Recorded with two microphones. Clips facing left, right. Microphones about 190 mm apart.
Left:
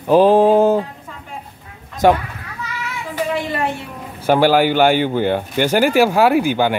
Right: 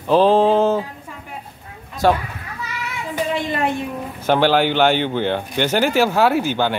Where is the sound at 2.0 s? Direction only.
15° left (ahead or behind).